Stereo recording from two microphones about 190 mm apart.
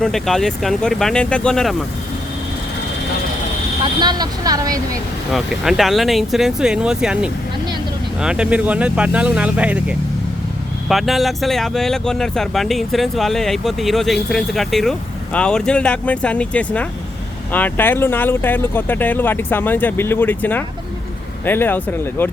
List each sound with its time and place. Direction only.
0.0 s speech: centre (ahead or behind)
4.0 s a woman's voice: 20° right (ahead or behind)
5.3 s speech: centre (ahead or behind)
10.8 s speech: centre (ahead or behind)